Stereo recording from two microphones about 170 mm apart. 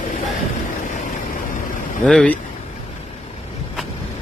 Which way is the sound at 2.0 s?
5° left (ahead or behind).